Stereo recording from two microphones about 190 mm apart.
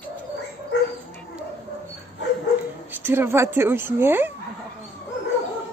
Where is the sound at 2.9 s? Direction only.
10° right (ahead or behind).